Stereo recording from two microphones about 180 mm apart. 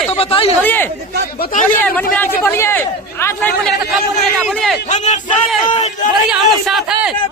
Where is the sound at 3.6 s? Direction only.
Centre (ahead or behind).